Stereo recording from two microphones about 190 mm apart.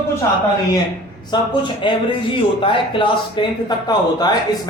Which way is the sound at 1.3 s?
25° left (ahead or behind).